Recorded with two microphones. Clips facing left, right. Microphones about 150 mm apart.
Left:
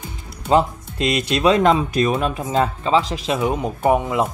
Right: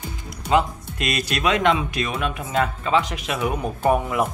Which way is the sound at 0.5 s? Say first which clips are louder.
Left 3 dB; 30° left (ahead or behind).